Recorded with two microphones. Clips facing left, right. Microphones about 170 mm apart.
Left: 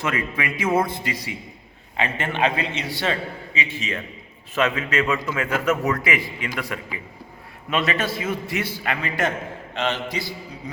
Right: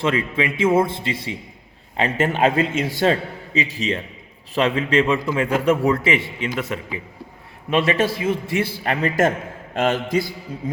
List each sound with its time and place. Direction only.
0.0 s a man's voice: 25° right (ahead or behind); by 10.3 s 50° right (ahead or behind)